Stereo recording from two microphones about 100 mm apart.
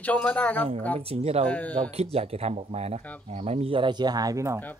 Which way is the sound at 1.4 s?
15° left (ahead or behind).